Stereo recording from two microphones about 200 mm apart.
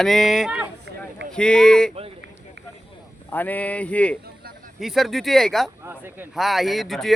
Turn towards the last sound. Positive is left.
turn(degrees=0)  # may be behind; listen again after turning